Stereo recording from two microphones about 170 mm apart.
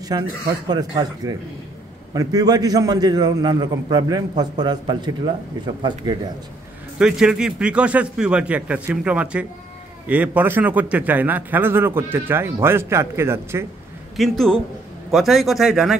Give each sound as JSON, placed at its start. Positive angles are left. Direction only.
{"t": 0.1, "sound": "a man's voice", "side_deg": -25}
{"t": 7.0, "sound": "a man's voice", "side_deg": -5}
{"t": 14.1, "sound": "speech", "side_deg": 0}